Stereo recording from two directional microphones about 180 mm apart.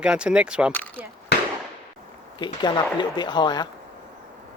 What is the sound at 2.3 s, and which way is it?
Speech, 25° left (ahead or behind).